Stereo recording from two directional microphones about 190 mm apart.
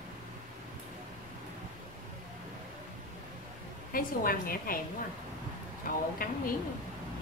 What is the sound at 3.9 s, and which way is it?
Speech, 50° left (ahead or behind).